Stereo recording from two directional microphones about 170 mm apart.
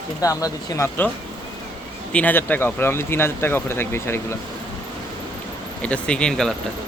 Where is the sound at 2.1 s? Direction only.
10° left (ahead or behind).